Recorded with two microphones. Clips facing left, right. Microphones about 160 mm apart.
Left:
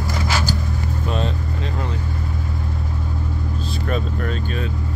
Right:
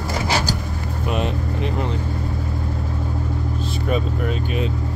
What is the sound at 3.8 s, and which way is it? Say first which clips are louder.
Speech: right 2 dB; 10° right (ahead or behind).